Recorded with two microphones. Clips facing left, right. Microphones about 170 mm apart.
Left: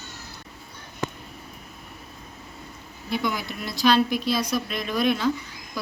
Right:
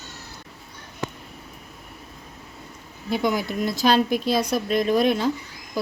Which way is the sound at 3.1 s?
45° right (ahead or behind).